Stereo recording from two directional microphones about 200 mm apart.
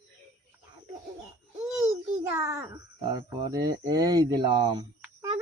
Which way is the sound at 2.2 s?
10° right (ahead or behind).